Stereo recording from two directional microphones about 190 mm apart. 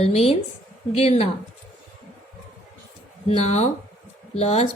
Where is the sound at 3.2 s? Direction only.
35° left (ahead or behind).